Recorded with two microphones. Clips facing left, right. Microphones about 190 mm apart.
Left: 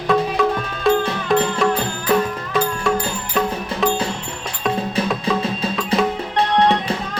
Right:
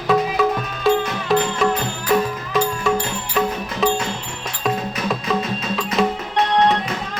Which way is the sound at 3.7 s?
30° left (ahead or behind).